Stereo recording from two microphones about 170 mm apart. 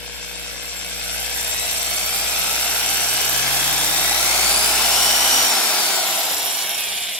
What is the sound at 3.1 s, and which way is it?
Helicopter, 5° left (ahead or behind).